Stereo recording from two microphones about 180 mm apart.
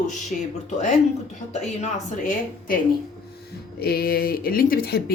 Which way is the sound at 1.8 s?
45° left (ahead or behind).